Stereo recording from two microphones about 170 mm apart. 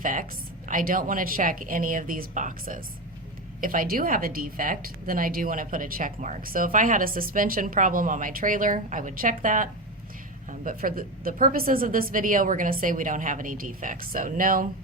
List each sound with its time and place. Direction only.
0.0 s a woman's voice: 50° right (ahead or behind)